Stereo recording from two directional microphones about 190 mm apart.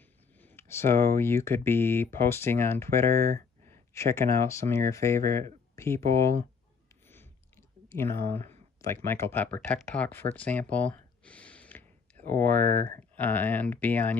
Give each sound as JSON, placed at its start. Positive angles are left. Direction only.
{"t": 0.4, "sound": "speech", "side_deg": 10}
{"t": 3.3, "sound": "a sound", "side_deg": -40}
{"t": 3.9, "sound": "speech", "side_deg": 15}
{"t": 7.1, "sound": "chewing", "side_deg": 10}
{"t": 8.8, "sound": "speech", "side_deg": 15}